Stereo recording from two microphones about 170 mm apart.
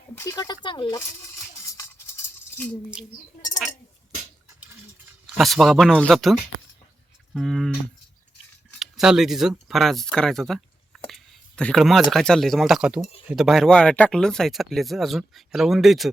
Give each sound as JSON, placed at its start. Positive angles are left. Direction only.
{"t": 0.2, "sound": "speech", "side_deg": 20}
{"t": 5.4, "sound": "speech", "side_deg": 0}
{"t": 7.3, "sound": "speech", "side_deg": 0}
{"t": 8.8, "sound": "speech", "side_deg": 0}
{"t": 11.1, "sound": "a sound", "side_deg": 5}
{"t": 12.1, "sound": "speech", "side_deg": 0}